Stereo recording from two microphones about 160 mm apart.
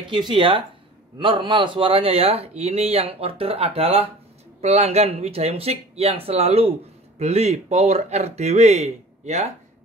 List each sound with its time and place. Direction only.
0.1 s speech: 30° right (ahead or behind)